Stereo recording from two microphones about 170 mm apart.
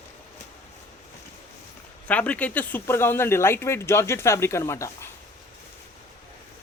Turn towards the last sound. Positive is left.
turn(degrees=15)  # may be behind; listen again after turning